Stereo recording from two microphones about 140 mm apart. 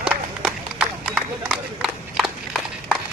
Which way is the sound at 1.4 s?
5° right (ahead or behind).